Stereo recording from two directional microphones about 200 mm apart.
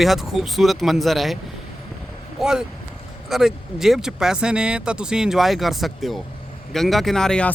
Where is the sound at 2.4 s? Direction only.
5° right (ahead or behind).